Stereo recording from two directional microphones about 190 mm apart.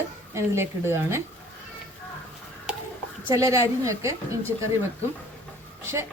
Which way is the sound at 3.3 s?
15° right (ahead or behind).